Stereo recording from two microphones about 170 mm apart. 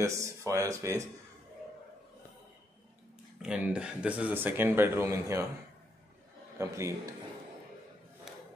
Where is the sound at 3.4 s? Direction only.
5° right (ahead or behind).